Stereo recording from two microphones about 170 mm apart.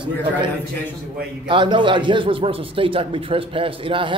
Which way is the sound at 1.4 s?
30° right (ahead or behind).